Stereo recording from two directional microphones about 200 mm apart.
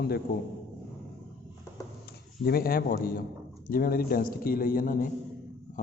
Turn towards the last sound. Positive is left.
turn(degrees=45)  # may be behind; listen again after turning